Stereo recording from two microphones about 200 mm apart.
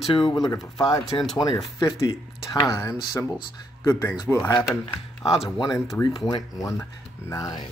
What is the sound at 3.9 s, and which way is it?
Speech, 5° left (ahead or behind).